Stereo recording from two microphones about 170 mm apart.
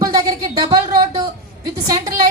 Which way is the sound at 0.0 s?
20° right (ahead or behind).